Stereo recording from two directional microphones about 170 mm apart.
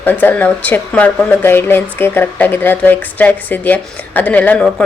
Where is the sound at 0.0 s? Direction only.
10° left (ahead or behind).